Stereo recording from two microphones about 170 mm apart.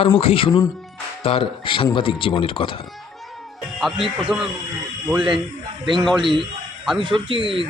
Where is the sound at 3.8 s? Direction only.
Centre (ahead or behind).